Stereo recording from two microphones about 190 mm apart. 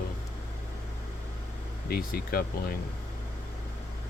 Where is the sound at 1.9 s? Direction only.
50° left (ahead or behind).